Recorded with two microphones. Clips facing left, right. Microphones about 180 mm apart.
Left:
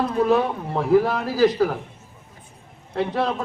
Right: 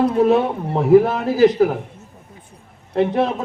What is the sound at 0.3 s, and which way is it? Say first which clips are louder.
Speech: right 3 dB; 25° right (ahead or behind).